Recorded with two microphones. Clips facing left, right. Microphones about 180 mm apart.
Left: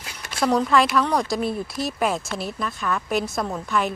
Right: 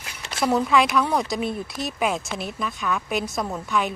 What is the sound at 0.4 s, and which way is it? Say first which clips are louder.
Speech: left 1 dB; centre (ahead or behind).